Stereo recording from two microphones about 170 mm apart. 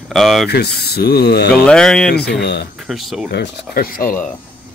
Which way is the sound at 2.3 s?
75° left (ahead or behind).